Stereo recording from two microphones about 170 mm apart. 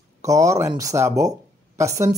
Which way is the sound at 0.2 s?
20° right (ahead or behind).